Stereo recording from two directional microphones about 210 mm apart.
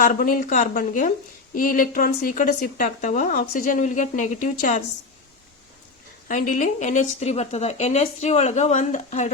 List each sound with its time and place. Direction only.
0.0 s speech: 40° left (ahead or behind)
6.2 s speech: 40° left (ahead or behind)